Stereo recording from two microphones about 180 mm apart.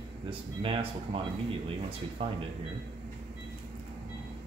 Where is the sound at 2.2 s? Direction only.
30° right (ahead or behind).